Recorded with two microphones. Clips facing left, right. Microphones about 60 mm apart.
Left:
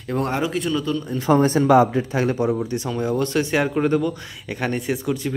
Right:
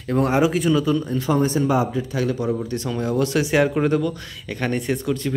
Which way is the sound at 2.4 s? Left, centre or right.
Centre.